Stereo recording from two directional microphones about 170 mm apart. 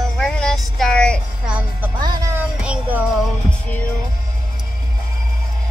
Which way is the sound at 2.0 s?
25° right (ahead or behind).